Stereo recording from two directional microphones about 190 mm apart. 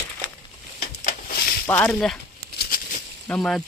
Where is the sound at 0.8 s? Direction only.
50° left (ahead or behind).